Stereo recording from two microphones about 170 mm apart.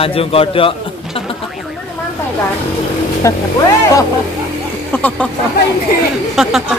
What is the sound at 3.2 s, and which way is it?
Speech, 20° left (ahead or behind).